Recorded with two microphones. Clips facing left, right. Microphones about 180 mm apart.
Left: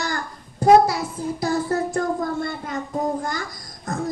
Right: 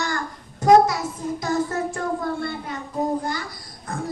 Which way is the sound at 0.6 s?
30° left (ahead or behind).